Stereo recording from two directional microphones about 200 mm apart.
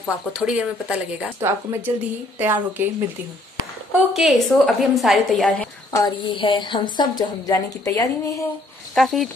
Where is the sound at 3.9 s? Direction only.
Centre (ahead or behind).